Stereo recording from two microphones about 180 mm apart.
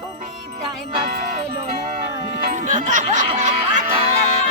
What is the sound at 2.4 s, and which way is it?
Music, 45° right (ahead or behind).